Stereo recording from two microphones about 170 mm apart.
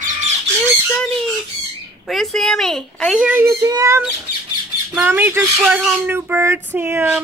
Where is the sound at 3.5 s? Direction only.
20° right (ahead or behind).